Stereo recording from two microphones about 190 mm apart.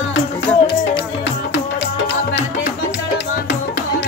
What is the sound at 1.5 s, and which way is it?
Music, 60° left (ahead or behind).